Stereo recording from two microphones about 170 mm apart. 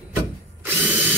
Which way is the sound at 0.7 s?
10° right (ahead or behind).